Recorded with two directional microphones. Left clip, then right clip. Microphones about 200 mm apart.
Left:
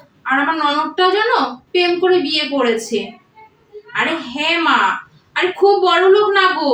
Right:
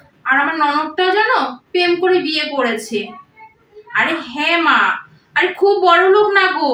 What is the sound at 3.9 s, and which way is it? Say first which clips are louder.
Speech: right 2 dB; 15° right (ahead or behind).